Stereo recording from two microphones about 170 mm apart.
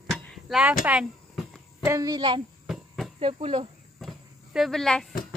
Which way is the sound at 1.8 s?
20° right (ahead or behind).